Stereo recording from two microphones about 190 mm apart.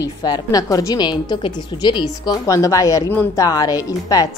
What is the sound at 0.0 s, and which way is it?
A woman's voice, 20° left (ahead or behind).